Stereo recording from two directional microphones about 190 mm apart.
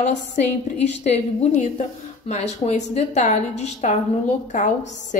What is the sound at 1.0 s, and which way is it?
Speech, 35° left (ahead or behind).